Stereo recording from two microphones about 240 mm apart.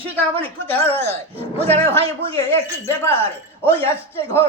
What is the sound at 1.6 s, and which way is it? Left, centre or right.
Speech, right.